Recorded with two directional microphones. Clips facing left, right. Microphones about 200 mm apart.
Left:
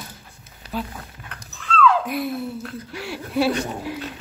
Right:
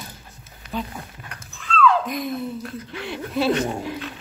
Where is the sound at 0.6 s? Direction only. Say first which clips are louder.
Even; 35° left (ahead or behind).